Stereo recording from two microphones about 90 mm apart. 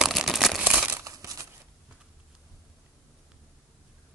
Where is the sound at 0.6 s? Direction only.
15° right (ahead or behind).